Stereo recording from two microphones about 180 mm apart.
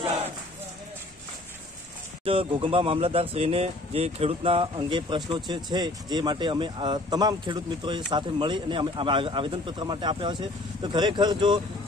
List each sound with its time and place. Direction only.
2.2 s speech: 30° right (ahead or behind)